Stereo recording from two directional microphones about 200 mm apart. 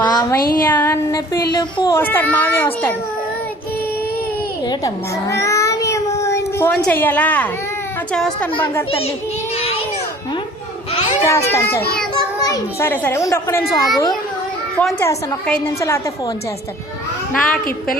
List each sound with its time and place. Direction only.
0.0 s a sound: 20° left (ahead or behind)
0.6 s speech: 10° left (ahead or behind)
4.6 s a sound: 20° left (ahead or behind)
5.3 s child singing: 15° left (ahead or behind)
8.1 s a woman's voice: 5° left (ahead or behind)
9.6 s child singing: 30° left (ahead or behind)
11.3 s a child's voice: 15° left (ahead or behind)
14.8 s speech: 5° left (ahead or behind)
17.3 s a woman's voice: 5° left (ahead or behind)